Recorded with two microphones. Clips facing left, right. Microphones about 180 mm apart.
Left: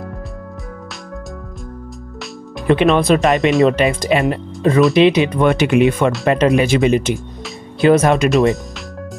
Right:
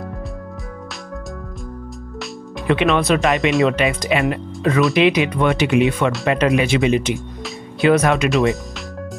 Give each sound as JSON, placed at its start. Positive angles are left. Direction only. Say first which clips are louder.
{"t": 2.6, "sound": "speech", "louder": "left 4 dB", "side_deg": 35}
{"t": 3.3, "sound": "speech", "louder": "left 3 dB", "side_deg": 0}
{"t": 4.1, "sound": "speech", "louder": "left 3 dB", "side_deg": 35}
{"t": 5.4, "sound": "speech", "louder": "left 3 dB", "side_deg": 50}
{"t": 6.2, "sound": "speech", "louder": "left 3 dB", "side_deg": 35}
{"t": 7.8, "sound": "speech", "louder": "left 3 dB", "side_deg": 30}
{"t": 8.3, "sound": "speech", "louder": "left 3 dB", "side_deg": 0}